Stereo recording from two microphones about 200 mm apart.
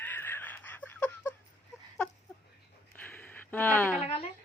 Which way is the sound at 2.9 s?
10° left (ahead or behind).